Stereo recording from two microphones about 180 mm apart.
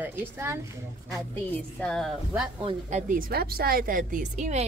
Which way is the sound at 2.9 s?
50° right (ahead or behind).